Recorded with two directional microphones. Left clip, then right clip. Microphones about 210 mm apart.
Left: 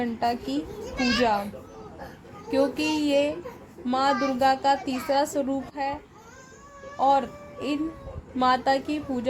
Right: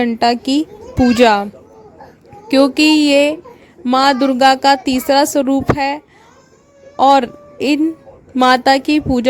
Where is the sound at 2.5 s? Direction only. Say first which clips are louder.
Right 13 dB; 50° right (ahead or behind).